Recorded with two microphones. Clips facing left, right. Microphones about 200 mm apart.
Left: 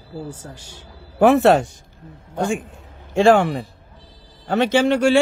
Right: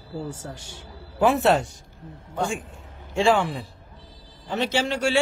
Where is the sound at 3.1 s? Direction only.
65° left (ahead or behind).